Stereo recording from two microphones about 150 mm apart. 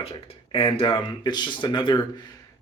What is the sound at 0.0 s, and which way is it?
Speech, 40° left (ahead or behind).